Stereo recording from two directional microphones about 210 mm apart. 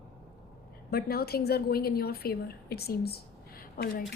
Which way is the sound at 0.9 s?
45° left (ahead or behind).